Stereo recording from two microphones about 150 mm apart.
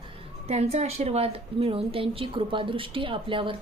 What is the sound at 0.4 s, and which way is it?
Speech, 45° right (ahead or behind).